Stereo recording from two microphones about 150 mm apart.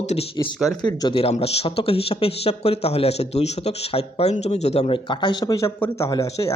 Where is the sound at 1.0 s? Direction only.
35° left (ahead or behind).